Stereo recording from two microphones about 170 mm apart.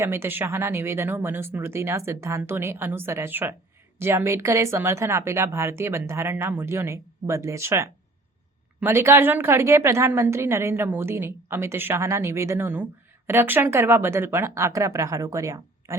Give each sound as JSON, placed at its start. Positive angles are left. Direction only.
{"t": 0.0, "sound": "a woman's voice", "side_deg": -15}